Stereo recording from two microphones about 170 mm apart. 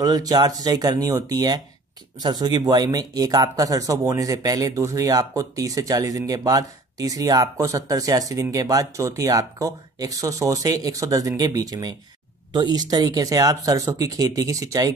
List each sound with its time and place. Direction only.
0.0 s speech: 20° right (ahead or behind)